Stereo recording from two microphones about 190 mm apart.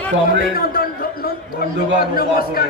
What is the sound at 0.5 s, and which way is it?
A man's voice, 50° left (ahead or behind).